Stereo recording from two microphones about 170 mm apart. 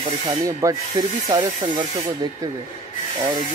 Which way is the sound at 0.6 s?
20° right (ahead or behind).